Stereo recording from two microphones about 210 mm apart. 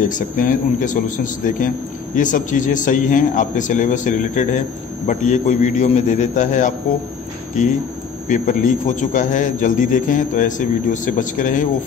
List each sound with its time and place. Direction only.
0.1 s a man's voice: 40° left (ahead or behind)
8.3 s a man's voice: 40° left (ahead or behind)